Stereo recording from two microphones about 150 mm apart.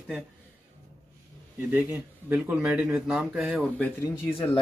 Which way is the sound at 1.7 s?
15° right (ahead or behind).